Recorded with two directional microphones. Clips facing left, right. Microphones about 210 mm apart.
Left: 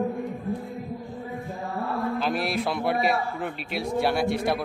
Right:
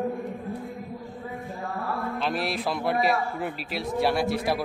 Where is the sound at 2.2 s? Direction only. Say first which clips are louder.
Left 2 dB; centre (ahead or behind).